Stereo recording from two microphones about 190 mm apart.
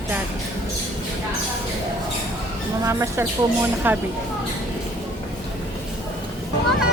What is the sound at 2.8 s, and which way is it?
Speech, 15° right (ahead or behind).